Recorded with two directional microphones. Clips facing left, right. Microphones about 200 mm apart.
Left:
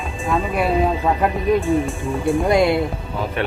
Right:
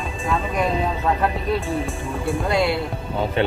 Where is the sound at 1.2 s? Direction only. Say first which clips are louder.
Left 4 dB; 15° left (ahead or behind).